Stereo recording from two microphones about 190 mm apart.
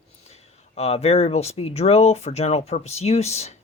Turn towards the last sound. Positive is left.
turn(degrees=35)  # may be behind; listen again after turning